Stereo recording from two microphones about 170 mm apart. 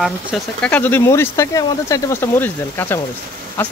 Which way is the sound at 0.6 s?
10° left (ahead or behind).